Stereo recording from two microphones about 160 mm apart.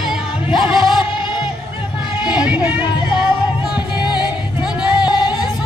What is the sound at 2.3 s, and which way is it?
Music, 10° right (ahead or behind).